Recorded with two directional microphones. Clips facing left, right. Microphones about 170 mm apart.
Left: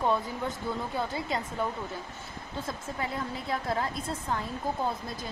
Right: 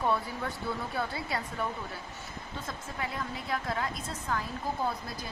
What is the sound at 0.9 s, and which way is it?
Speech, 20° left (ahead or behind).